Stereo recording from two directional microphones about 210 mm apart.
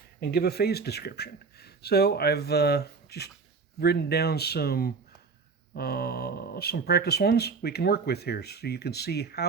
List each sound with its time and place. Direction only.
0.2 s speech: 50° left (ahead or behind)